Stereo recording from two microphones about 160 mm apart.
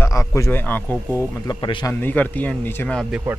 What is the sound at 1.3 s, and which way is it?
Speech, 25° left (ahead or behind).